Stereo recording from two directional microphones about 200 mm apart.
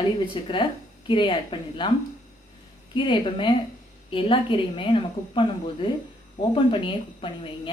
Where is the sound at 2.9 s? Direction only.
25° left (ahead or behind).